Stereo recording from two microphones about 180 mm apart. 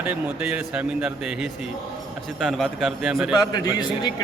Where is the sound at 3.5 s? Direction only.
20° left (ahead or behind).